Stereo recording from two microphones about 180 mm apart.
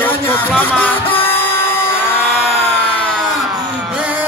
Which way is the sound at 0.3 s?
10° left (ahead or behind).